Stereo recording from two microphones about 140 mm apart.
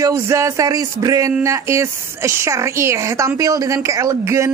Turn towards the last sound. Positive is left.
turn(degrees=-20)  # may be behind; listen again after turning